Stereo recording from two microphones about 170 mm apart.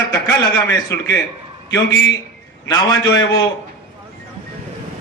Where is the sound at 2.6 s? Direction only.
20° left (ahead or behind).